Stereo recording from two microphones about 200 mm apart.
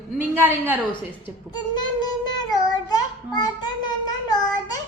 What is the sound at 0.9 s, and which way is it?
A child's voice, 20° left (ahead or behind).